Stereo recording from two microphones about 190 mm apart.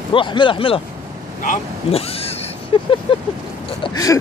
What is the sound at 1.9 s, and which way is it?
Speech, 30° left (ahead or behind).